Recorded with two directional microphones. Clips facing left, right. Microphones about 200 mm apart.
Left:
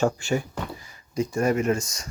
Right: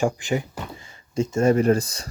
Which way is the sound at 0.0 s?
15° right (ahead or behind).